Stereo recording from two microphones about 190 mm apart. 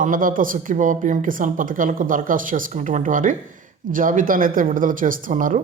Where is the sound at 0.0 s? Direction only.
45° right (ahead or behind).